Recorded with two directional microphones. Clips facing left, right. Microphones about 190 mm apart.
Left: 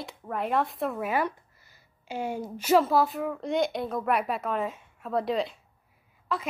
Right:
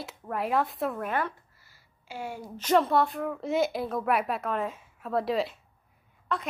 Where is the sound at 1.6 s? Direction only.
20° left (ahead or behind).